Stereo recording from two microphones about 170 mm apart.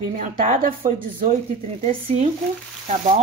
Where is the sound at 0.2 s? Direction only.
45° right (ahead or behind).